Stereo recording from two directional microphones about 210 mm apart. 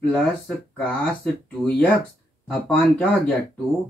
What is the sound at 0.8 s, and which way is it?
Speech, 5° left (ahead or behind).